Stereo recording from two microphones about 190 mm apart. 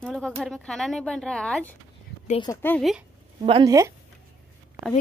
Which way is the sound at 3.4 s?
30° right (ahead or behind).